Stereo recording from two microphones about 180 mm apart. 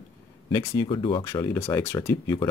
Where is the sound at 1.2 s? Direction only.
15° left (ahead or behind).